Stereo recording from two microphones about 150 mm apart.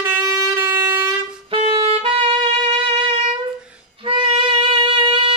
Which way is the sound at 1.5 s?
40° right (ahead or behind).